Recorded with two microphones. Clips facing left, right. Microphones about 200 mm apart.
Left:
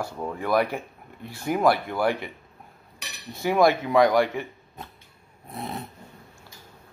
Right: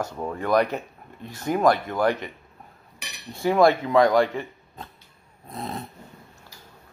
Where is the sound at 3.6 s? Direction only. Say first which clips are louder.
Even; 15° left (ahead or behind).